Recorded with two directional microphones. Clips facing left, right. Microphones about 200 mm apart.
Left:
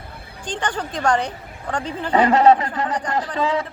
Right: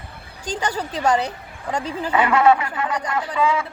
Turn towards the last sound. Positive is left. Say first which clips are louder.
# even
turn(degrees=35)  # may be behind; listen again after turning